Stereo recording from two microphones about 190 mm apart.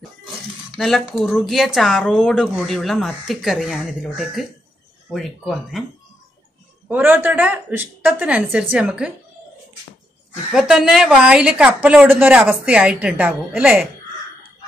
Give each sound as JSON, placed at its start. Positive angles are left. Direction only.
{"t": 0.7, "sound": "speech", "side_deg": 0}
{"t": 6.9, "sound": "a woman's voice", "side_deg": -10}
{"t": 10.5, "sound": "a woman's voice", "side_deg": -5}